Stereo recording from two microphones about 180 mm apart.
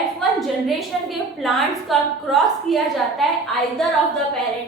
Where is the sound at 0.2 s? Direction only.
Centre (ahead or behind).